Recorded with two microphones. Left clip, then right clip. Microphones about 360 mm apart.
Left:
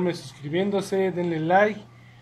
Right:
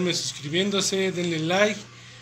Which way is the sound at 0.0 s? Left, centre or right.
Left.